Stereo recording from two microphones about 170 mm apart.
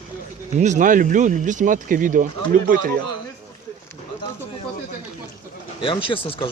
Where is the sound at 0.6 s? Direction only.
45° right (ahead or behind).